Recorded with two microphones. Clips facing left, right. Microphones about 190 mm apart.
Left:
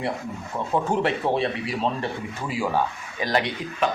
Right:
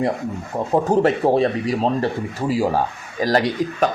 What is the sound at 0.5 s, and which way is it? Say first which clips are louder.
Speech: right 6 dB; 40° right (ahead or behind).